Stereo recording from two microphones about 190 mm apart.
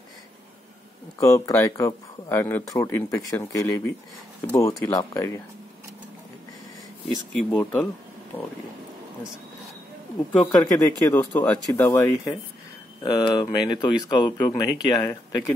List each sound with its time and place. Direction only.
1.2 s speech: 15° left (ahead or behind)
7.3 s speech: 5° left (ahead or behind)
10.4 s speech: 10° left (ahead or behind)